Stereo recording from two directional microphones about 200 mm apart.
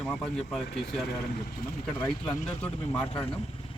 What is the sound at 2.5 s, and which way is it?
Speech, 5° left (ahead or behind).